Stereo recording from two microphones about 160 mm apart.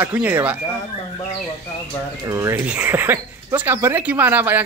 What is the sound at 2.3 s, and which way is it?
Speech, 20° right (ahead or behind).